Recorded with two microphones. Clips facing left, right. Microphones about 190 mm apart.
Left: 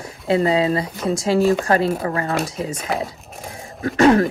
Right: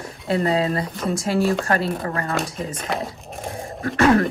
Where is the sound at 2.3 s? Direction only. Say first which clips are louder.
Left 3 dB; centre (ahead or behind).